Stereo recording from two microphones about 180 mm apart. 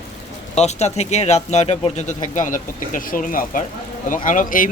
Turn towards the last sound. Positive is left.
turn(degrees=50)  # may be behind; listen again after turning